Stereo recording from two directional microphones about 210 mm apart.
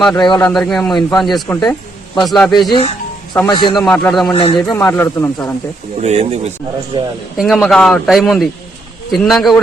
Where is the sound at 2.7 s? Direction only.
25° left (ahead or behind).